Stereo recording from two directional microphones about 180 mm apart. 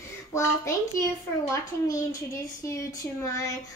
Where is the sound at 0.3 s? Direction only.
15° left (ahead or behind).